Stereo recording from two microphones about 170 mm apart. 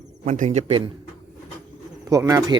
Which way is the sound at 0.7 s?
30° right (ahead or behind).